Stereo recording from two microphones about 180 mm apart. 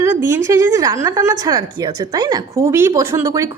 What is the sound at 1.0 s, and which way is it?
A woman's voice, 15° right (ahead or behind).